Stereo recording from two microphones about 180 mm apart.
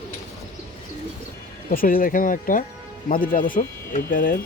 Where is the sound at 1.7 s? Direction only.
55° left (ahead or behind).